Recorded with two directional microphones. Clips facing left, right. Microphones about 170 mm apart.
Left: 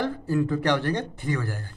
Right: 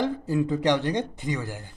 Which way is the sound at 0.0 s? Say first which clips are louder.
Even; 15° right (ahead or behind).